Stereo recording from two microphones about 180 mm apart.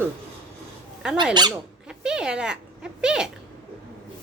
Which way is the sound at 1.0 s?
5° right (ahead or behind).